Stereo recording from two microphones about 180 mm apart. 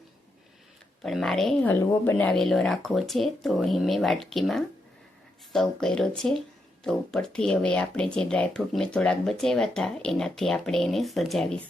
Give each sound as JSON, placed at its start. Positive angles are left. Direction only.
{"t": 1.0, "sound": "speech", "side_deg": 0}